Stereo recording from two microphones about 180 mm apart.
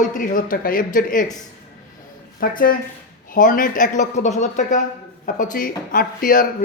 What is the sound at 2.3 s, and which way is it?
Speech, 55° left (ahead or behind).